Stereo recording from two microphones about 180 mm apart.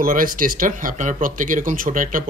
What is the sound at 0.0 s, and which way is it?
Speech, 50° right (ahead or behind).